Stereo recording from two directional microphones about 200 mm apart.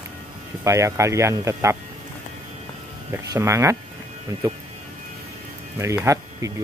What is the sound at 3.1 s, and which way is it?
Speech, 15° right (ahead or behind).